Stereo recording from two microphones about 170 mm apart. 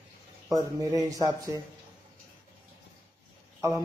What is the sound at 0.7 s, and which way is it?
Speech, 20° right (ahead or behind).